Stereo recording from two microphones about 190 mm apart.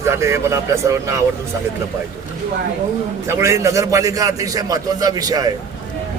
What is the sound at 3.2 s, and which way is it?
A man's voice, 15° right (ahead or behind).